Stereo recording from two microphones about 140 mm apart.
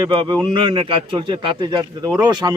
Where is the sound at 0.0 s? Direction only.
30° right (ahead or behind).